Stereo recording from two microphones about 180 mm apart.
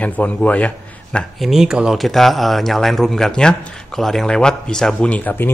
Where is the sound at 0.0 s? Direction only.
10° left (ahead or behind).